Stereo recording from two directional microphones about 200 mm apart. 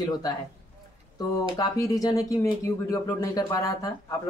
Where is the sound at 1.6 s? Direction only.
15° left (ahead or behind).